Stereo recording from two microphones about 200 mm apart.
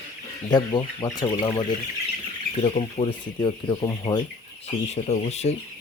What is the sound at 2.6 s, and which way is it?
Speech, 30° left (ahead or behind).